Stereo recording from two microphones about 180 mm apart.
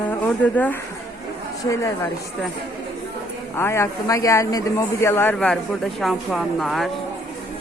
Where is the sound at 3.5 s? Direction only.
15° left (ahead or behind).